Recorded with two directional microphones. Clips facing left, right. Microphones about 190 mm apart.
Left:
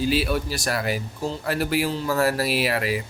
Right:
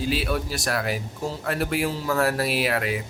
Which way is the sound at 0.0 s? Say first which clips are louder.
Left 3 dB; centre (ahead or behind).